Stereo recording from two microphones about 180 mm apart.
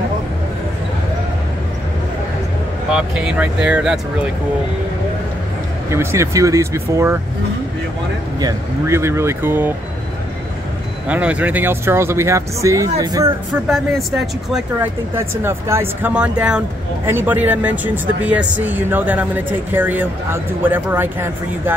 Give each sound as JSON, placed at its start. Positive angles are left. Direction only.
{"t": 2.9, "sound": "speech", "side_deg": -5}
{"t": 5.9, "sound": "speech", "side_deg": -15}
{"t": 8.4, "sound": "speech", "side_deg": -20}
{"t": 11.1, "sound": "speech", "side_deg": -5}
{"t": 13.7, "sound": "speech", "side_deg": 0}
{"t": 15.1, "sound": "speech", "side_deg": -15}